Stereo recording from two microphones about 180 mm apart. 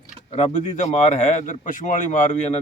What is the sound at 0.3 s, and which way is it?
Speech, 35° left (ahead or behind).